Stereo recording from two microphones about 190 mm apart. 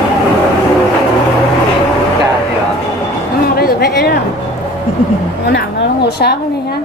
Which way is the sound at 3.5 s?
55° left (ahead or behind).